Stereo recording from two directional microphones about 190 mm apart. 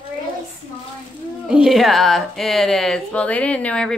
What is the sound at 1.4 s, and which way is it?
A woman's voice, 5° right (ahead or behind).